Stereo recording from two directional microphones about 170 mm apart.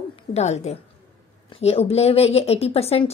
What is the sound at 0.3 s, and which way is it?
A woman's voice, 40° left (ahead or behind).